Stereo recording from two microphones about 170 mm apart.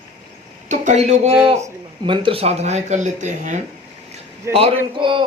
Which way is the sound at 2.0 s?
30° right (ahead or behind).